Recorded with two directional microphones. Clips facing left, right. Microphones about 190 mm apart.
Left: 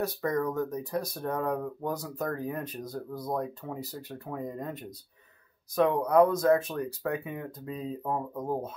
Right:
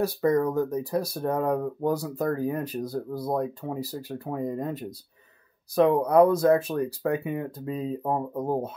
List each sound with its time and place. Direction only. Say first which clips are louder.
0.0 s speech: right 6 dB; 30° right (ahead or behind)
6.0 s speech: right 1 dB; 30° right (ahead or behind)